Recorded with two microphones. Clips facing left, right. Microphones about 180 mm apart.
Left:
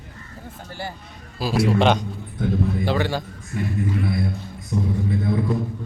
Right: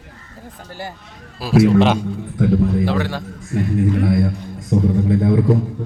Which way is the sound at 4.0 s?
65° right (ahead or behind).